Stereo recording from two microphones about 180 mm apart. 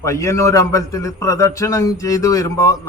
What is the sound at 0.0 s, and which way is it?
A man's voice, 15° left (ahead or behind).